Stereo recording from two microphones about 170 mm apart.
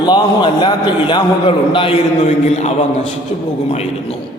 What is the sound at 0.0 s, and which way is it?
A man's voice, 25° left (ahead or behind).